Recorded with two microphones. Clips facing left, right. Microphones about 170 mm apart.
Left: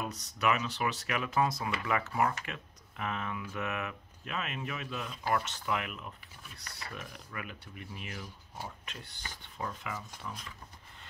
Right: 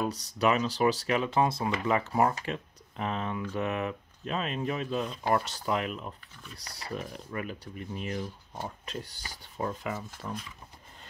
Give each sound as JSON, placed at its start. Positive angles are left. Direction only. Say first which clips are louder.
{"t": 0.0, "sound": "speech", "louder": "right 5 dB", "side_deg": -35}